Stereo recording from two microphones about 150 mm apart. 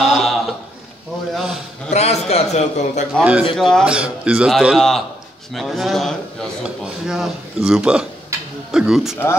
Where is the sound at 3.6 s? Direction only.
5° left (ahead or behind).